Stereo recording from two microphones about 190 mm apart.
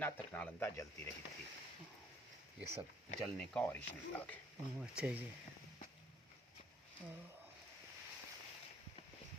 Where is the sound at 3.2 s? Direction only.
5° left (ahead or behind).